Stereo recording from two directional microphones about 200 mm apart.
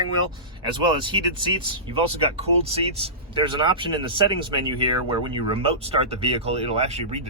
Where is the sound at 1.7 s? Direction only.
25° right (ahead or behind).